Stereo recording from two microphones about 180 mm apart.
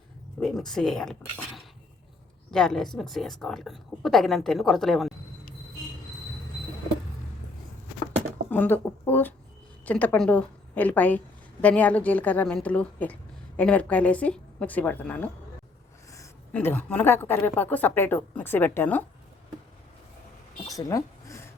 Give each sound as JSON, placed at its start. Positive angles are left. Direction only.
{"t": 0.3, "sound": "a woman's voice", "side_deg": 0}
{"t": 8.4, "sound": "a woman's voice", "side_deg": 10}
{"t": 16.5, "sound": "a woman's voice", "side_deg": 10}
{"t": 20.7, "sound": "a sound", "side_deg": 20}